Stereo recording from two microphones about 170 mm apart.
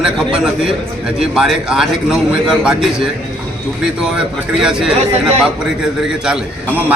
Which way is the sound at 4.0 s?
5° right (ahead or behind).